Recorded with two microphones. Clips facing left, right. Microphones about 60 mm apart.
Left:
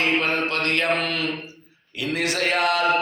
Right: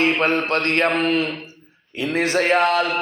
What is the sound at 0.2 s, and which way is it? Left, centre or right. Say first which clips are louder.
Mantra: right 4 dB; right.